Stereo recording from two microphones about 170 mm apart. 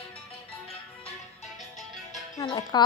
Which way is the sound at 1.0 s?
40° left (ahead or behind).